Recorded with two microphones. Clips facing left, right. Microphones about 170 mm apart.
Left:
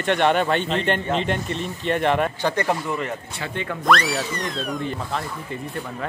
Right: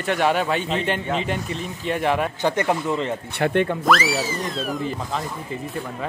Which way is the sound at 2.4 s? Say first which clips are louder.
Right 1 dB; 20° right (ahead or behind).